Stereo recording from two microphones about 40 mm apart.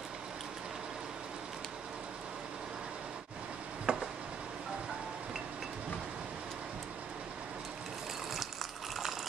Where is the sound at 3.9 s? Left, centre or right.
Right.